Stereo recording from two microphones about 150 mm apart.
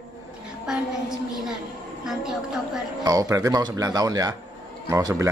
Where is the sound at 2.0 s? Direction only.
5° right (ahead or behind).